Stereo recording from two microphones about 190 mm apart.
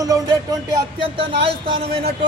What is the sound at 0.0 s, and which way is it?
Speech, 20° right (ahead or behind).